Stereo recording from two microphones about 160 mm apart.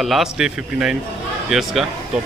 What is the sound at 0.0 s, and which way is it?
Speech, centre (ahead or behind).